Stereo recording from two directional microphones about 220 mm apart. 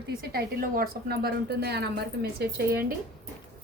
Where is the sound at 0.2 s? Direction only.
45° right (ahead or behind).